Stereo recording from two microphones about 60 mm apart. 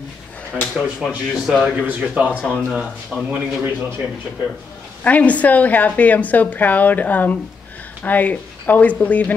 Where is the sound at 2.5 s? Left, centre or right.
Centre.